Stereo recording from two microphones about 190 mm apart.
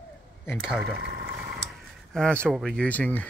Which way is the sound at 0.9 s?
55° right (ahead or behind).